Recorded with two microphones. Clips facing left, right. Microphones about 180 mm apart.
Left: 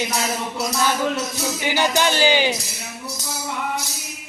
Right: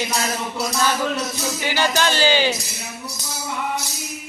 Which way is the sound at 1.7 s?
15° left (ahead or behind).